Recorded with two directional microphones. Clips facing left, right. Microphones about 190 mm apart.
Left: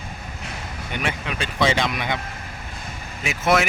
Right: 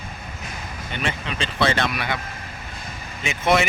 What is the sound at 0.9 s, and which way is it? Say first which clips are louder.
Speech: left 1 dB; 15° left (ahead or behind).